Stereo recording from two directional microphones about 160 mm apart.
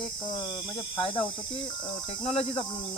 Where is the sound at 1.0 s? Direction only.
35° left (ahead or behind).